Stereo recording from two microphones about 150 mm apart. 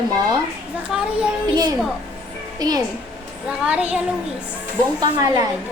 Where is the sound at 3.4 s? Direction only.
10° right (ahead or behind).